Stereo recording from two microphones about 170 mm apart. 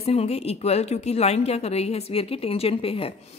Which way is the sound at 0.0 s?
35° left (ahead or behind).